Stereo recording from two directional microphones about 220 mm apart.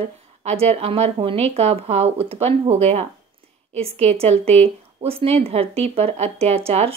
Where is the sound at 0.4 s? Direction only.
30° right (ahead or behind).